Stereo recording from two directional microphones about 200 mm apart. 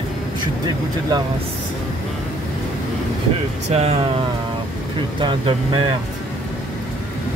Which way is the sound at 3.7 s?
30° right (ahead or behind).